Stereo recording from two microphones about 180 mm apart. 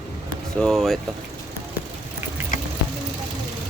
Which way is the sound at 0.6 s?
Centre (ahead or behind).